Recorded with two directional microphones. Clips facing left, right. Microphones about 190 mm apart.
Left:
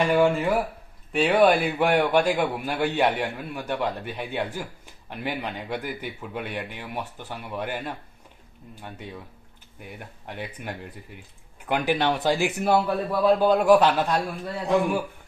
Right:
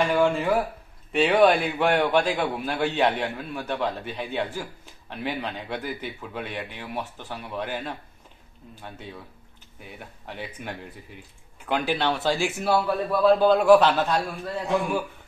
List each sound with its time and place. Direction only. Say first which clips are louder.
0.1 s a man's voice: left 1 dB; 10° left (ahead or behind)